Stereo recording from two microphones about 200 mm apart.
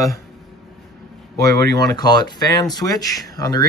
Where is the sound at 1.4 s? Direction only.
20° left (ahead or behind).